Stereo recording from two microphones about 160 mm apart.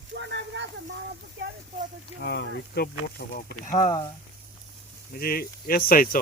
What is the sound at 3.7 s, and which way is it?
Speech, 50° left (ahead or behind).